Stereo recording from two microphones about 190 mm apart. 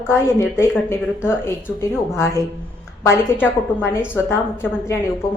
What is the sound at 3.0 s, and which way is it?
A woman's voice, 10° left (ahead or behind).